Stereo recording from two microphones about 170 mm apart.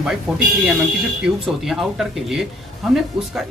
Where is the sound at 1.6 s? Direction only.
Centre (ahead or behind).